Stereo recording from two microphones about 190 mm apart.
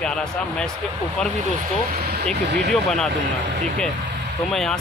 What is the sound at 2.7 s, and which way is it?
Speech, 5° left (ahead or behind).